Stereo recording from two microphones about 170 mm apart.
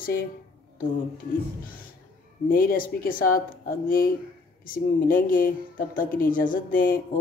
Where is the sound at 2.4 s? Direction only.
60° left (ahead or behind).